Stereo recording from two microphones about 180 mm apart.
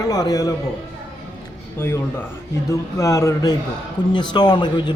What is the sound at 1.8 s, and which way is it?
A man's voice, 10° left (ahead or behind).